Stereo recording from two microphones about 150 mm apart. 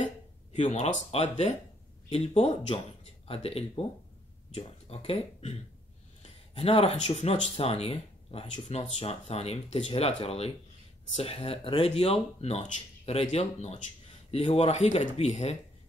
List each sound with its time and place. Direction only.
0.0 s a sound: 55° left (ahead or behind)
2.0 s speech: 40° left (ahead or behind)
6.5 s speech: 40° left (ahead or behind)